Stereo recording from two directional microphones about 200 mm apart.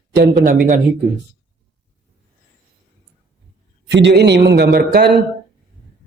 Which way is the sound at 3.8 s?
60° right (ahead or behind).